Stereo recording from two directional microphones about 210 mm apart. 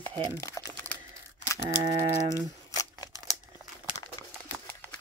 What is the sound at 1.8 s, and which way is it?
Typing, 15° right (ahead or behind).